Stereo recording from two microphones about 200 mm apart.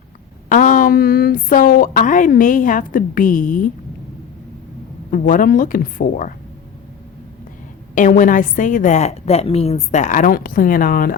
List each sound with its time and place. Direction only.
0.4 s speech: 40° left (ahead or behind)
5.1 s speech: 40° left (ahead or behind)
7.9 s a woman's voice: 40° left (ahead or behind)